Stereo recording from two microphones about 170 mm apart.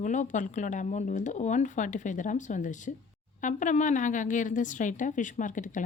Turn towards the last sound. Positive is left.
turn(degrees=50)  # may be behind; listen again after turning